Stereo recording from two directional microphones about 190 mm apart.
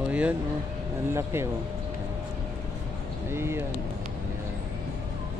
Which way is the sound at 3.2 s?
15° right (ahead or behind).